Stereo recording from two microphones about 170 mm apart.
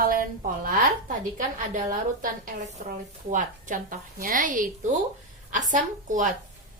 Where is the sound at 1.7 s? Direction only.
50° right (ahead or behind).